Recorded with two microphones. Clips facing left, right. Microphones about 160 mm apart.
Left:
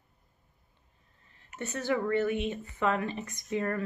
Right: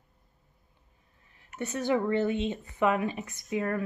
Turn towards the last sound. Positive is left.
turn(degrees=-5)  # may be behind; listen again after turning